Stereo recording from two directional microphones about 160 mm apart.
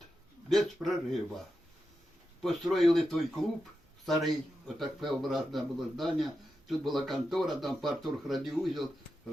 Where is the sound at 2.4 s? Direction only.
Centre (ahead or behind).